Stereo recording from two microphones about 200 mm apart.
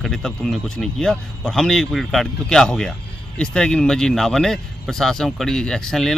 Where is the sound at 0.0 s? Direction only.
Centre (ahead or behind).